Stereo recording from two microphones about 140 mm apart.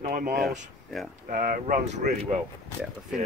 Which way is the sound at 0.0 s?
70° right (ahead or behind).